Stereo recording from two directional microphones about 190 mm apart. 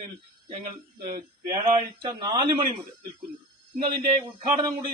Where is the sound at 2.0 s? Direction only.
25° right (ahead or behind).